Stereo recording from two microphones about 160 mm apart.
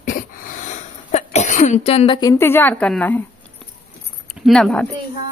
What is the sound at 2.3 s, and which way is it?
Speech, 15° left (ahead or behind).